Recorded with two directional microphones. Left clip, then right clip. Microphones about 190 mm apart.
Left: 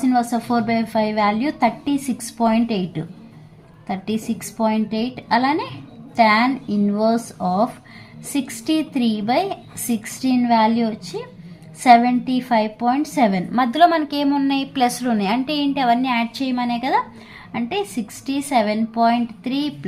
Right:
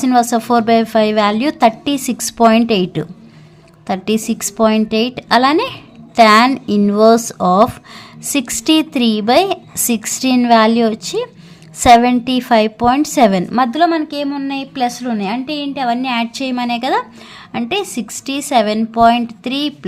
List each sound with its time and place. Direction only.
0.0 s a woman's voice: 45° right (ahead or behind)
13.7 s a woman's voice: 15° right (ahead or behind); by 19.7 s 35° right (ahead or behind)